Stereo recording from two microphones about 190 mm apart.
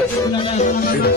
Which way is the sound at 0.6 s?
45° left (ahead or behind).